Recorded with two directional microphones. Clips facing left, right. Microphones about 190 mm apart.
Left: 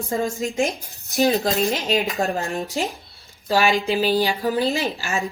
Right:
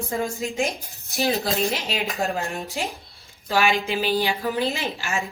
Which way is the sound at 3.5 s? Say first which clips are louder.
Left 3 dB; 35° left (ahead or behind).